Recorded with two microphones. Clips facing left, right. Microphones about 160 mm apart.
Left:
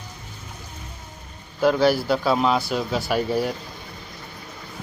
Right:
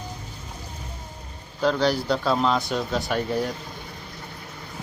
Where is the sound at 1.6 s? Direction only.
5° left (ahead or behind).